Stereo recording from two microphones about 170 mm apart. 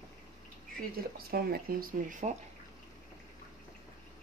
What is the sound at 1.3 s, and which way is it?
A woman's voice, 65° right (ahead or behind).